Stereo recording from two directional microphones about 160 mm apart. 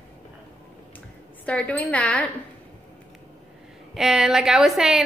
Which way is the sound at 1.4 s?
10° left (ahead or behind).